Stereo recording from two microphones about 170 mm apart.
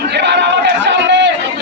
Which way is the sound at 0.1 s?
80° right.